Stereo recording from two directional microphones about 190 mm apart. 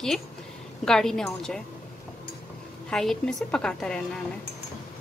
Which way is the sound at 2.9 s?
Centre (ahead or behind).